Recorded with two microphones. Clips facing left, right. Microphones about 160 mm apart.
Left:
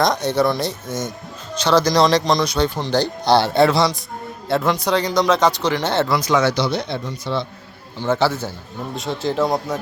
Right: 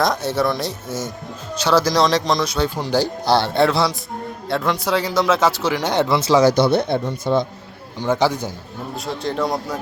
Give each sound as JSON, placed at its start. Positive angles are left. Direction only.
{"t": 0.0, "sound": "speech", "side_deg": -5}
{"t": 6.1, "sound": "speech", "side_deg": -30}
{"t": 6.5, "sound": "speech", "side_deg": -55}
{"t": 7.9, "sound": "a man's voice", "side_deg": -15}
{"t": 9.0, "sound": "speech", "side_deg": 0}